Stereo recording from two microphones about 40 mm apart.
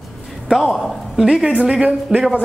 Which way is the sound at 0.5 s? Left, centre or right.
Centre.